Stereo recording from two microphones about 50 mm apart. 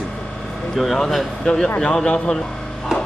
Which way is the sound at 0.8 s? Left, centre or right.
Centre.